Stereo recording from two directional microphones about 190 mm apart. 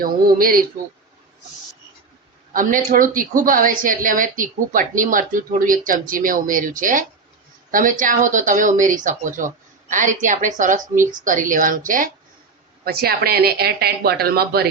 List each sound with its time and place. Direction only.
0.0 s a woman's voice: 50° right (ahead or behind)
2.5 s a woman's voice: 45° right (ahead or behind)